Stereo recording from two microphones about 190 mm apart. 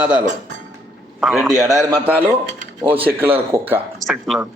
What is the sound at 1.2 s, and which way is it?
Speech, centre (ahead or behind).